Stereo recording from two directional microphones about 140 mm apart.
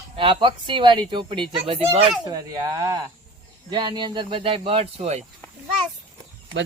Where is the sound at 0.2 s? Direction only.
35° right (ahead or behind).